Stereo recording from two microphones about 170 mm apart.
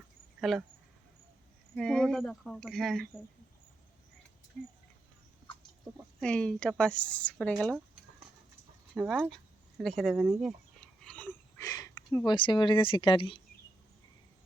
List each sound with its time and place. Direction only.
0.5 s speech: centre (ahead or behind)
1.7 s speech: 5° left (ahead or behind)
4.6 s speech: centre (ahead or behind)
6.1 s a woman's voice: 5° left (ahead or behind)
9.0 s speech: 10° right (ahead or behind); by 13.4 s 30° left (ahead or behind)